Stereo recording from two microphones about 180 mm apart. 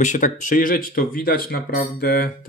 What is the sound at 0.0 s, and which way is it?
Speech, 45° left (ahead or behind).